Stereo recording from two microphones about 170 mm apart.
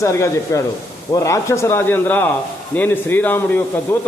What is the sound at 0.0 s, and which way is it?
Speech, 15° left (ahead or behind).